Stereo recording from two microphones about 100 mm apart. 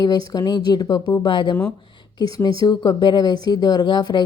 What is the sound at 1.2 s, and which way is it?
Speech, 55° left (ahead or behind).